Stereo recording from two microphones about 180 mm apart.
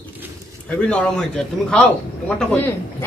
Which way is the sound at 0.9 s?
5° left (ahead or behind).